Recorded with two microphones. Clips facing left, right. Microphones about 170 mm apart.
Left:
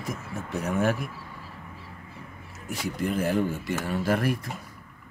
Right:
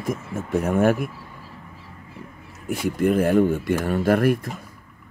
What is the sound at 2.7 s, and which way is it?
Speech, 55° right (ahead or behind).